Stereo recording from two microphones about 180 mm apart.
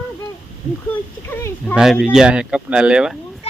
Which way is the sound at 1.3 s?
15° left (ahead or behind).